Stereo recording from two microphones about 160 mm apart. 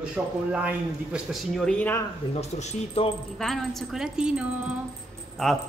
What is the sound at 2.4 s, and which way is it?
Speech, 45° left (ahead or behind).